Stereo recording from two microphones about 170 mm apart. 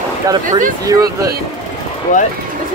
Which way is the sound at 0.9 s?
25° right (ahead or behind).